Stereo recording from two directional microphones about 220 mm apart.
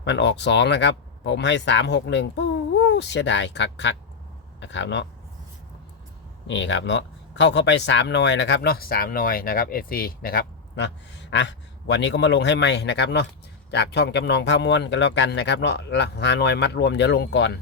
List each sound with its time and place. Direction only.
0.0 s speech: 50° left (ahead or behind)
6.5 s speech: 55° left (ahead or behind)